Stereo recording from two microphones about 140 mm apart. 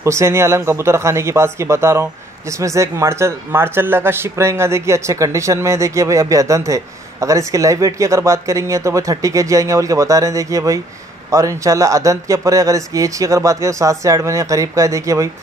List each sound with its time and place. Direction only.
0.0 s speech: 20° right (ahead or behind)